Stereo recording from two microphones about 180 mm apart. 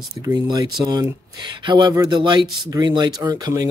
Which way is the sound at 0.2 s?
20° right (ahead or behind).